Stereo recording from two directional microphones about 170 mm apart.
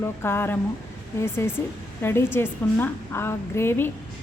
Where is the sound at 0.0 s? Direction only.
15° left (ahead or behind).